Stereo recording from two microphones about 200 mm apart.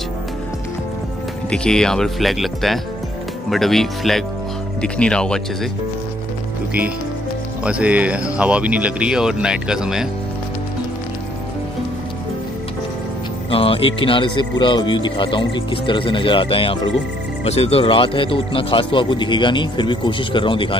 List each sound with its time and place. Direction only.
1.5 s speech: 5° left (ahead or behind)
7.6 s speech: 5° right (ahead or behind)
13.5 s speech: 25° left (ahead or behind)